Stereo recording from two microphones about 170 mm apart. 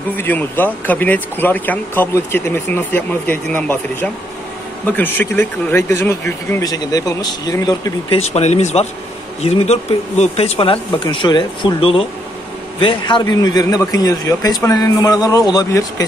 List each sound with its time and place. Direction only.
0.1 s speech: 10° left (ahead or behind)
8.1 s a man's voice: 40° left (ahead or behind); by 16.1 s 20° left (ahead or behind)